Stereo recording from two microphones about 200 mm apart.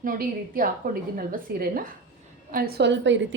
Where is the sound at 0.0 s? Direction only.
45° right (ahead or behind).